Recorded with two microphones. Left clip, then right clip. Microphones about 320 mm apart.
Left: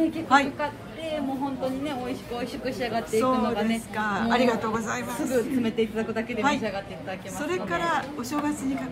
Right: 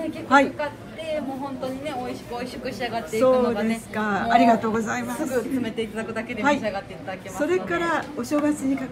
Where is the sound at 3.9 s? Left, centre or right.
Centre.